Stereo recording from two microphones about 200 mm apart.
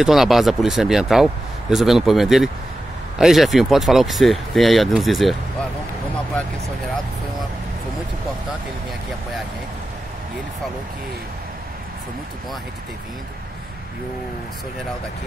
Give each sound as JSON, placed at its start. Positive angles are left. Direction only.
{"t": 0.0, "sound": "speech", "side_deg": 0}